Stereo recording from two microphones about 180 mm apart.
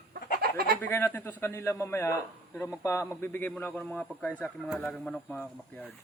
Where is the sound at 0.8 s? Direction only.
15° left (ahead or behind).